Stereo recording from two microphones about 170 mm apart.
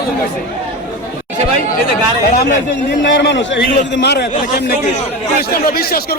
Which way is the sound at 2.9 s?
90° left.